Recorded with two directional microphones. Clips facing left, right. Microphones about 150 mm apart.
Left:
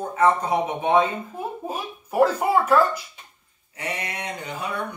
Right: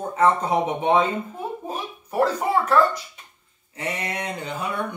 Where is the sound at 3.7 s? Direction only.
30° right (ahead or behind).